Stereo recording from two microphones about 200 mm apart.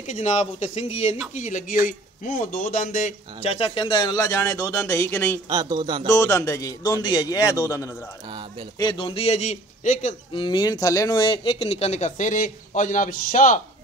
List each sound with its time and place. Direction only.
0.0 s speech: 35° left (ahead or behind); by 5.4 s 15° left (ahead or behind)
5.5 s speech: 20° right (ahead or behind)
6.0 s a man's voice: 15° left (ahead or behind)
8.3 s speech: 25° right (ahead or behind)
8.7 s speech: 25° left (ahead or behind)
10.3 s speech: 25° left (ahead or behind); by 13.6 s 40° left (ahead or behind)